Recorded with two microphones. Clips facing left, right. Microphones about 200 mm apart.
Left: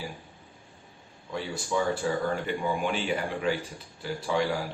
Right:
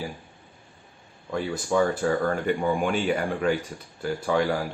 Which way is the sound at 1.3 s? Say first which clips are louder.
Right 5 dB; 55° right (ahead or behind).